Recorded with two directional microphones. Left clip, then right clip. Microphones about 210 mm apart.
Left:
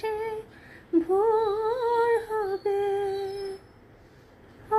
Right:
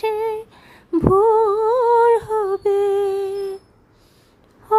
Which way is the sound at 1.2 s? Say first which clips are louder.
Right 9 dB; 25° right (ahead or behind).